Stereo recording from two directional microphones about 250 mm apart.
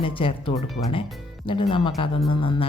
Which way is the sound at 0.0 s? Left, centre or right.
Left.